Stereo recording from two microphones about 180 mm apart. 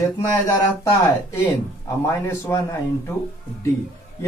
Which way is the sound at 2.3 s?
15° left (ahead or behind).